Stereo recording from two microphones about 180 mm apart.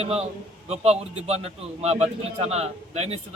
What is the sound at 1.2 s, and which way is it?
A man's voice, 35° right (ahead or behind).